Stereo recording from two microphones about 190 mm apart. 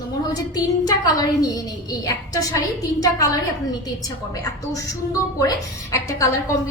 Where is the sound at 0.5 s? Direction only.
20° left (ahead or behind).